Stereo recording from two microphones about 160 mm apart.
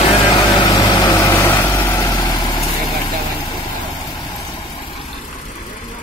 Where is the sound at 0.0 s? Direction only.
35° left (ahead or behind).